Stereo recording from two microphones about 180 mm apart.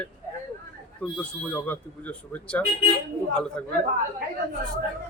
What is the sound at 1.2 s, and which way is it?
A man's voice, 10° left (ahead or behind).